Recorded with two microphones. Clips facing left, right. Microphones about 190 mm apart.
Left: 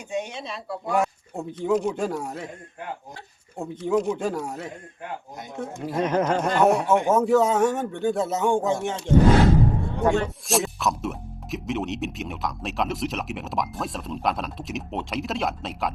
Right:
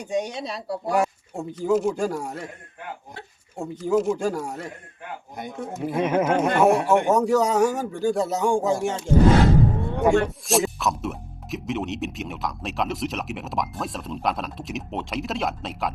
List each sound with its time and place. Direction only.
0.0 s speech: 40° right (ahead or behind)
0.9 s speech: centre (ahead or behind)
3.6 s speech: centre (ahead or behind)
10.2 s speech: centre (ahead or behind)